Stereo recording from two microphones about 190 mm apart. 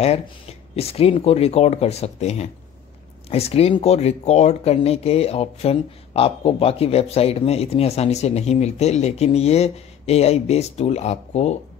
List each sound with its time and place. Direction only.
0.0 s speech: 30° left (ahead or behind)